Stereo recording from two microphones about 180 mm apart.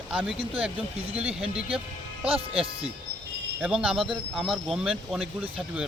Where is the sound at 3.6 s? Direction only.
5° right (ahead or behind).